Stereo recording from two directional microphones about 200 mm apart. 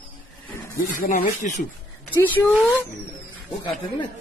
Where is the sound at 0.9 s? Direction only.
40° left (ahead or behind).